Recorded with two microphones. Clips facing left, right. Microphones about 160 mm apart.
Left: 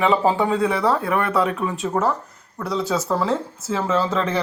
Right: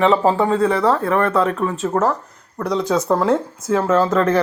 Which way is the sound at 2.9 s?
20° right (ahead or behind).